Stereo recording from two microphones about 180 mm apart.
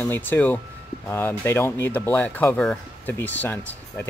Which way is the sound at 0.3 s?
10° left (ahead or behind).